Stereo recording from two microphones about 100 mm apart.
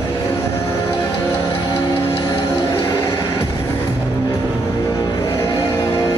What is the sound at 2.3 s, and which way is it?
Music, 35° left (ahead or behind).